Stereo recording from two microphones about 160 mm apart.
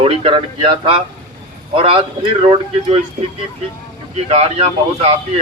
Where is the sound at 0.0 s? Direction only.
35° right (ahead or behind).